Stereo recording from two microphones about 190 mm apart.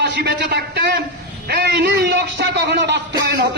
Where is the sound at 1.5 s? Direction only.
60° right (ahead or behind).